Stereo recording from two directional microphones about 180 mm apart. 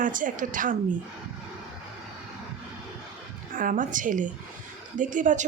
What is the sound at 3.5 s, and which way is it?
A woman's voice, 50° right (ahead or behind).